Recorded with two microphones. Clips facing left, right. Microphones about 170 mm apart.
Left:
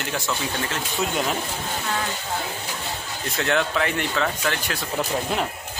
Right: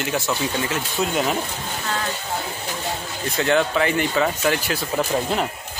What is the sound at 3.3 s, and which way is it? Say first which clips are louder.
Speech: right 4 dB; centre (ahead or behind).